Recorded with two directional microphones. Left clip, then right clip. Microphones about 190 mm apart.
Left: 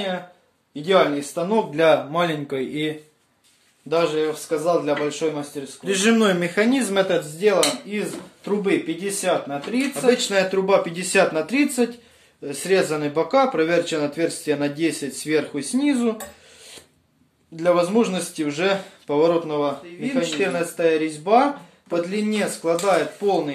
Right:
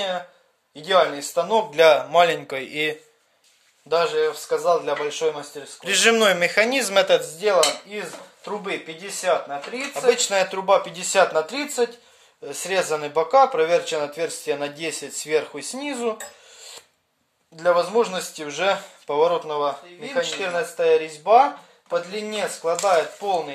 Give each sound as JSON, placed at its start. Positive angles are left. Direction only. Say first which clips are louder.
{"t": 0.7, "sound": "speech", "louder": "left 1 dB", "side_deg": -55}
{"t": 3.9, "sound": "speech", "louder": "even", "side_deg": -45}
{"t": 9.2, "sound": "speech", "louder": "right 2 dB", "side_deg": -20}
{"t": 9.9, "sound": "speech", "louder": "even", "side_deg": -50}
{"t": 12.4, "sound": "speech", "louder": "left 3 dB", "side_deg": -45}
{"t": 17.6, "sound": "speech", "louder": "even", "side_deg": -40}